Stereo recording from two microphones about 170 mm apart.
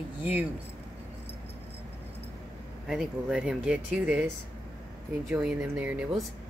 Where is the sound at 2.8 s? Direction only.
5° right (ahead or behind).